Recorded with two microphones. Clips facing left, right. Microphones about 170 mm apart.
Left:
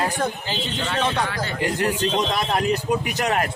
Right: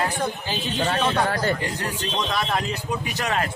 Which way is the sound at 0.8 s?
45° right (ahead or behind).